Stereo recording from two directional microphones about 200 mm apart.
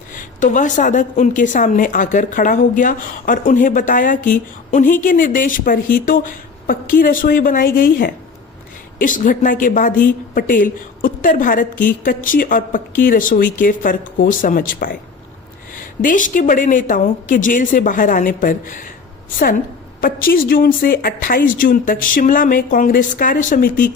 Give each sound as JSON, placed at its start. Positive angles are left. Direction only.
{"t": 0.1, "sound": "a woman's voice", "side_deg": 40}
{"t": 20.0, "sound": "a woman's voice", "side_deg": 45}